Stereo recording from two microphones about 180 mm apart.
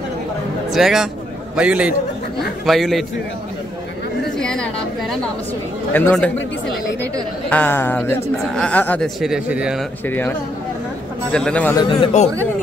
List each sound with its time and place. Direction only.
0.7 s speech: centre (ahead or behind)
4.4 s a woman's voice: 5° left (ahead or behind)
10.0 s speech: 10° left (ahead or behind)
11.3 s speech: 5° left (ahead or behind)
11.7 s speech: 25° left (ahead or behind)